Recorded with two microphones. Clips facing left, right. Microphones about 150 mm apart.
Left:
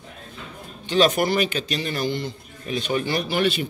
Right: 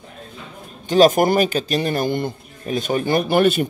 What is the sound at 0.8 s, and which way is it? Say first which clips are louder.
A man's voice: right 6 dB; 45° right (ahead or behind).